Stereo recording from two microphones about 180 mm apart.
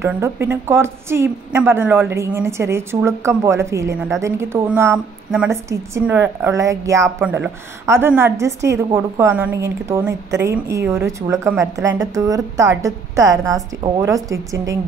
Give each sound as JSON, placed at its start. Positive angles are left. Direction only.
{"t": 0.0, "sound": "a woman's voice", "side_deg": -15}